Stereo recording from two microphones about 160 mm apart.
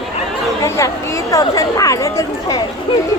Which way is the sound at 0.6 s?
15° left (ahead or behind).